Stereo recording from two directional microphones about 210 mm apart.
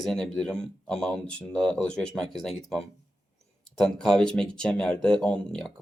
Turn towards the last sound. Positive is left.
turn(degrees=5)  # may be behind; listen again after turning